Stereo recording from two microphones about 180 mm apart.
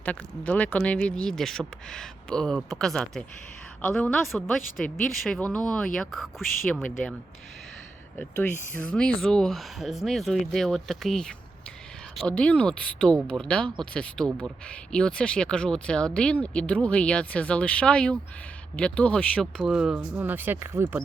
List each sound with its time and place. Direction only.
0.0 s speech: 10° left (ahead or behind)
8.2 s speech: 5° left (ahead or behind); by 21.0 s 15° right (ahead or behind)